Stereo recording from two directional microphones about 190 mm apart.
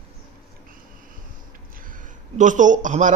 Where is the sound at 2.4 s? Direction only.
40° right (ahead or behind).